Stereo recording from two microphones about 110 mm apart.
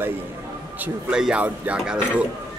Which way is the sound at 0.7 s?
15° right (ahead or behind).